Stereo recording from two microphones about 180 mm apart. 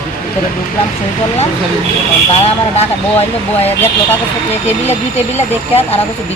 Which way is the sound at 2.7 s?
35° left (ahead or behind).